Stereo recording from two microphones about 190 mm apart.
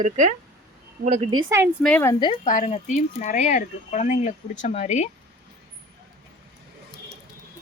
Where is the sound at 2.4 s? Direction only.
40° left (ahead or behind).